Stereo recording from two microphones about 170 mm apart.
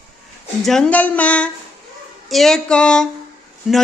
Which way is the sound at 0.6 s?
5° left (ahead or behind).